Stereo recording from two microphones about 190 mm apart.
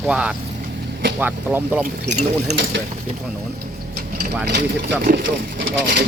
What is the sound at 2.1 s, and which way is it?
Speech, 70° right (ahead or behind).